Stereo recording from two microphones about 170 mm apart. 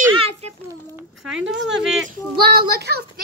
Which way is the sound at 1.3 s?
5° right (ahead or behind).